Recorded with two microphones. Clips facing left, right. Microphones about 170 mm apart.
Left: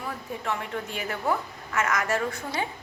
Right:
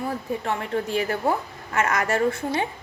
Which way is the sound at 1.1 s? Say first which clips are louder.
Right 4 dB; 30° right (ahead or behind).